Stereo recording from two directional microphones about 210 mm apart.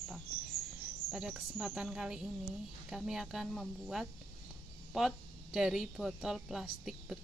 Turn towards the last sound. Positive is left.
turn(degrees=0)  # may be behind; listen again after turning